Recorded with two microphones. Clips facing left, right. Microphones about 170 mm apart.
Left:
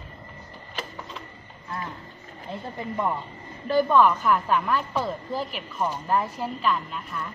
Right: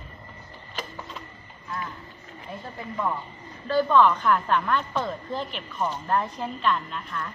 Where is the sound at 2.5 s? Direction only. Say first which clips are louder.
Left 4 dB; 20° left (ahead or behind); by 7.3 s 5° left (ahead or behind).